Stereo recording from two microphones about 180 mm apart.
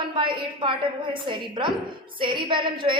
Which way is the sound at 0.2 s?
25° right (ahead or behind).